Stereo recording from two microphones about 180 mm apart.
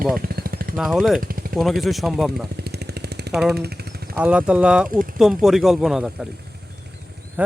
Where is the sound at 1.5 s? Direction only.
Centre (ahead or behind).